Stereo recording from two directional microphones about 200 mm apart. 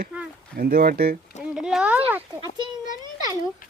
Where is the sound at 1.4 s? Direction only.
5° right (ahead or behind).